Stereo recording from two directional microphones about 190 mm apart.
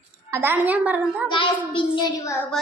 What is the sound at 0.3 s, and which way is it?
Music, 10° right (ahead or behind).